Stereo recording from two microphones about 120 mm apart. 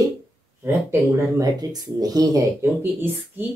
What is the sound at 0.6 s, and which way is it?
Speech, 20° right (ahead or behind).